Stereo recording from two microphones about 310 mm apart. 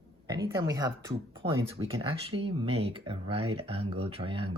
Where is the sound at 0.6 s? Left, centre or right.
Centre.